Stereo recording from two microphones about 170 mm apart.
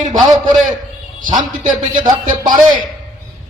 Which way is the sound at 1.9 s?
25° right (ahead or behind).